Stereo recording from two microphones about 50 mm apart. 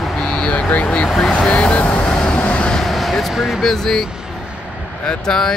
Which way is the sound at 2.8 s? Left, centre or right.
Centre.